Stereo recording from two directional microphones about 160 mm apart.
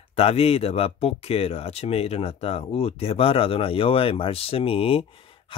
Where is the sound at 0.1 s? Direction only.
40° left (ahead or behind).